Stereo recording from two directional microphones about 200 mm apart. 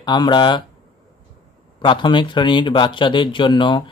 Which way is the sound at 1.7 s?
25° left (ahead or behind).